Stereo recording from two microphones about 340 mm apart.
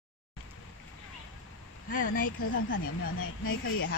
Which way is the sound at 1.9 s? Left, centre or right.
Left.